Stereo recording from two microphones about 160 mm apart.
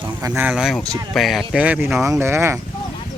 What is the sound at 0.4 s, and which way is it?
Speech, 5° right (ahead or behind).